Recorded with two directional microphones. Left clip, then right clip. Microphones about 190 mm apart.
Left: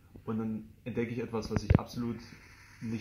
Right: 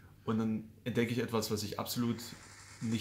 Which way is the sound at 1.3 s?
30° right (ahead or behind).